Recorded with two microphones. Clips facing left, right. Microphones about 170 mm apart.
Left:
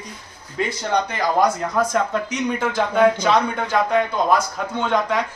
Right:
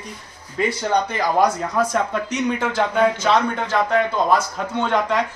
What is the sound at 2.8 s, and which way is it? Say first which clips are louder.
A man's voice: left 3 dB; 5° left (ahead or behind).